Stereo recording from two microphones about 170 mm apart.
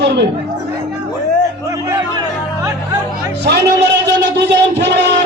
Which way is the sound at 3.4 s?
90° right.